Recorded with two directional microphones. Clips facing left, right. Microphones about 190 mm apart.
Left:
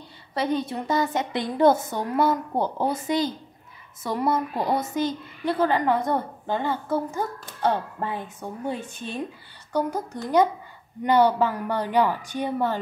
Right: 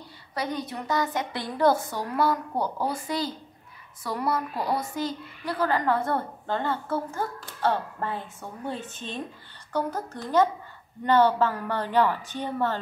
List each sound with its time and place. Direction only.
0.3 s a woman's voice: 25° left (ahead or behind)